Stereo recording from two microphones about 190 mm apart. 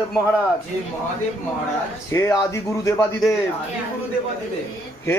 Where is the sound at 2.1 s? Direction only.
15° left (ahead or behind).